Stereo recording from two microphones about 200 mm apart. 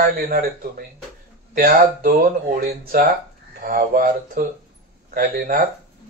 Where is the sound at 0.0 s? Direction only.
50° right (ahead or behind).